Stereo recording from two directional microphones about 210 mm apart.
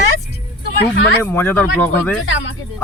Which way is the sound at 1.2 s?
10° left (ahead or behind).